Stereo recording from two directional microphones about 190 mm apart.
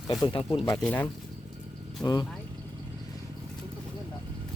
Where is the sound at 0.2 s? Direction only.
25° left (ahead or behind).